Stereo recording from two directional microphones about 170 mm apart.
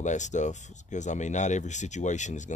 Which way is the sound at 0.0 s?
45° left (ahead or behind).